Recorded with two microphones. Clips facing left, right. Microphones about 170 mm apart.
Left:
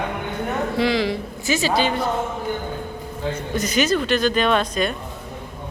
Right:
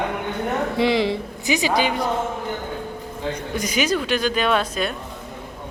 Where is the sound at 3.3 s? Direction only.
10° right (ahead or behind).